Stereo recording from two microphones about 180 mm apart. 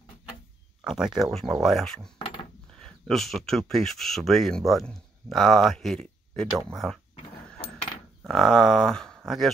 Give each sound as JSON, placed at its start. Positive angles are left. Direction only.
{"t": 0.8, "sound": "speech", "side_deg": -5}
{"t": 2.1, "sound": "a sound", "side_deg": 30}
{"t": 2.8, "sound": "speech", "side_deg": 0}
{"t": 8.2, "sound": "speech", "side_deg": 0}